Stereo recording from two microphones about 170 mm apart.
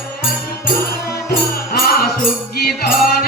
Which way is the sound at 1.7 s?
60° left (ahead or behind).